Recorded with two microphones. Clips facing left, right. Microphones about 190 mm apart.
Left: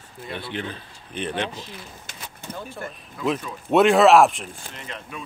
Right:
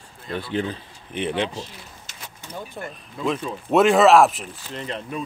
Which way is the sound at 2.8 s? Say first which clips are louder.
Right 3 dB; 20° right (ahead or behind).